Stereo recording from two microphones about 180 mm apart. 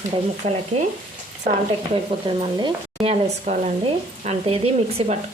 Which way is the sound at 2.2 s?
25° right (ahead or behind).